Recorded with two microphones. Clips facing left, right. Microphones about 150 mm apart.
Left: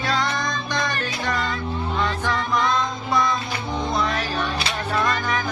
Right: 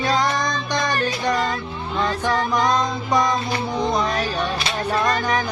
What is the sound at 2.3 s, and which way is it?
Music, 40° right (ahead or behind).